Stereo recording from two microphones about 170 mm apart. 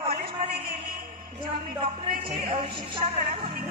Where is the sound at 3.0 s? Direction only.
45° right (ahead or behind).